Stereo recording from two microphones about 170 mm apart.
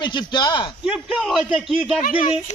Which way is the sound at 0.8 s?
5° right (ahead or behind).